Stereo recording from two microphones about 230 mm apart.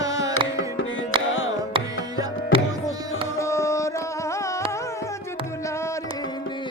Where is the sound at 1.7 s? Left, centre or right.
Right.